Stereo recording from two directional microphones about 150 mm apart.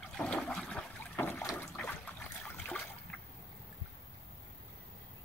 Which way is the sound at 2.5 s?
5° left (ahead or behind).